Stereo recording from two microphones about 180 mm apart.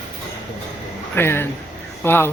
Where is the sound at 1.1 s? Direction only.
10° left (ahead or behind).